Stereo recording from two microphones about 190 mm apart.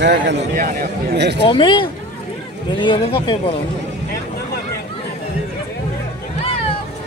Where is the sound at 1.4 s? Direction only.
25° left (ahead or behind).